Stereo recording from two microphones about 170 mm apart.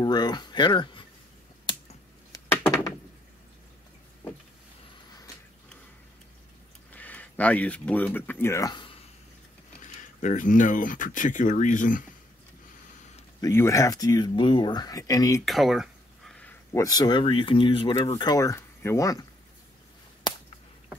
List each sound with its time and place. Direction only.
0.0 s speech: 25° left (ahead or behind)
6.9 s speech: 10° left (ahead or behind); by 8.9 s 25° left (ahead or behind)
9.8 s speech: 45° left (ahead or behind)
13.4 s speech: 15° left (ahead or behind)
15.4 s a sound: centre (ahead or behind)
16.8 s speech: 25° left (ahead or behind)